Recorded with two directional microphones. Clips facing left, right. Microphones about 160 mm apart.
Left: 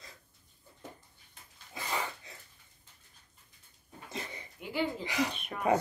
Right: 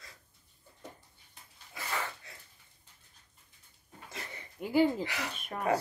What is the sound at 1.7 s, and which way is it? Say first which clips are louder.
Dog: left 1 dB; 20° left (ahead or behind).